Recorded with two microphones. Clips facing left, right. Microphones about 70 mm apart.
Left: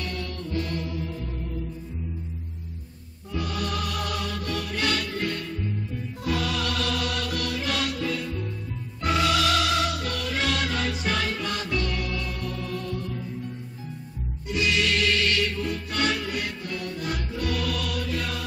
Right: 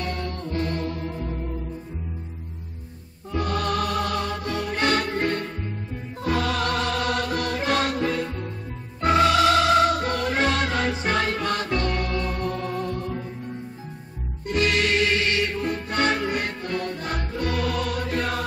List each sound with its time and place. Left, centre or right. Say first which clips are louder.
0.0 s music: right 3 dB; right
3.3 s music: right 5 dB; right
14.5 s music: right 3 dB; right